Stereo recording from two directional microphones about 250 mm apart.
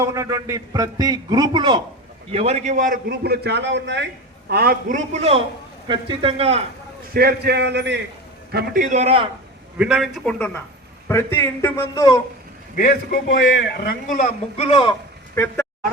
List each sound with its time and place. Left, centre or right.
0.0 s a man's voice: centre
7.1 s a man's voice: right
8.5 s a man's voice: right
9.7 s a man's voice: centre
12.7 s a man's voice: left
14.5 s speech: left